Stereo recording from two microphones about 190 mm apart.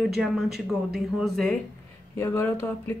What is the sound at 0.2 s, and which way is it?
A woman's voice, centre (ahead or behind).